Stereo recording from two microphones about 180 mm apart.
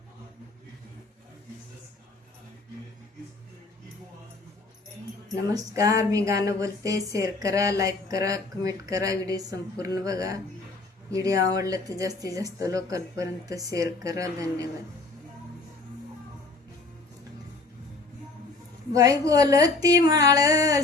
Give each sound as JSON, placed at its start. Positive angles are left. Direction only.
{"t": 5.5, "sound": "speech", "side_deg": -20}
{"t": 18.9, "sound": "speech", "side_deg": -20}